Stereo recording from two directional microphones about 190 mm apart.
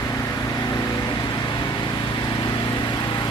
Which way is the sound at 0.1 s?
20° left (ahead or behind).